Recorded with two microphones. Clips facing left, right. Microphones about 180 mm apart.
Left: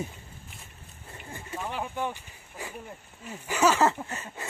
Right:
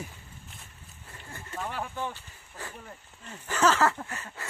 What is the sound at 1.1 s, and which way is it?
Speech, 15° left (ahead or behind).